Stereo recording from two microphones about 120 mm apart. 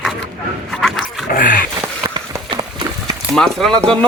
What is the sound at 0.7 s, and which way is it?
Roaring cats, centre (ahead or behind).